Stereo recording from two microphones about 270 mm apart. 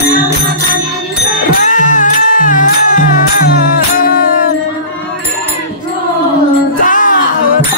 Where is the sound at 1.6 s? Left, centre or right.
Left.